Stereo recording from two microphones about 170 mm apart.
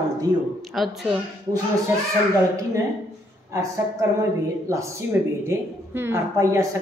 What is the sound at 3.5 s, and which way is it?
A woman's voice, 20° right (ahead or behind).